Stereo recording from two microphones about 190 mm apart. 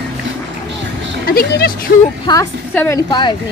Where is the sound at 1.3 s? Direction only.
50° left (ahead or behind).